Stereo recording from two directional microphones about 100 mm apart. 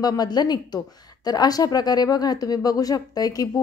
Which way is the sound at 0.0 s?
40° left (ahead or behind).